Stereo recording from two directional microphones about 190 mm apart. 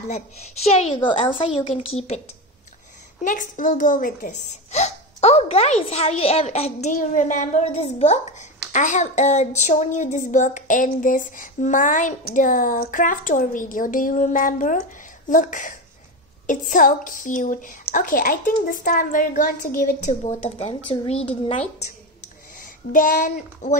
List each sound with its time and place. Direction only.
0.1 s a woman's voice: 35° left (ahead or behind)
22.6 s speech: 45° left (ahead or behind)